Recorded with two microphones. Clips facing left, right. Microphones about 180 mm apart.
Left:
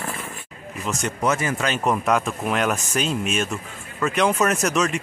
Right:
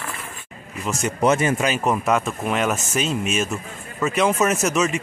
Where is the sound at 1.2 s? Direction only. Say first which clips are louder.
Right 5 dB; 20° right (ahead or behind).